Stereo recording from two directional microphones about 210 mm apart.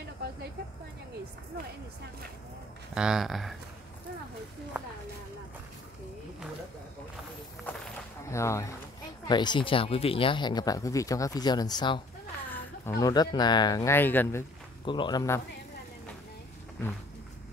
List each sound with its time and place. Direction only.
2.9 s speech: 5° right (ahead or behind)
8.3 s speech: 15° left (ahead or behind)
12.4 s a sound: 10° left (ahead or behind)
13.0 s speech: 20° left (ahead or behind)
14.9 s speech: 20° left (ahead or behind)